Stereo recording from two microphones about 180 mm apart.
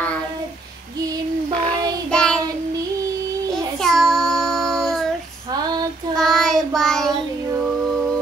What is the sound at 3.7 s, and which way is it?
Child singing, centre (ahead or behind).